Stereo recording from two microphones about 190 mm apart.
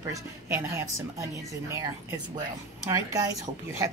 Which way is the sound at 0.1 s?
15° right (ahead or behind).